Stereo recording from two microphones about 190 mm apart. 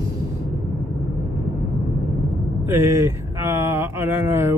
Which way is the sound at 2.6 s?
10° right (ahead or behind).